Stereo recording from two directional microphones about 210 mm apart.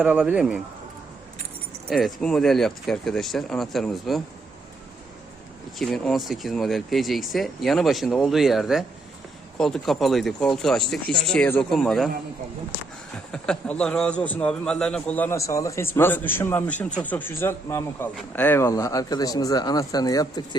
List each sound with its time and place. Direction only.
0.0 s speech: 5° right (ahead or behind)
1.9 s speech: centre (ahead or behind)
5.8 s speech: centre (ahead or behind)
13.3 s a man's voice: 5° left (ahead or behind)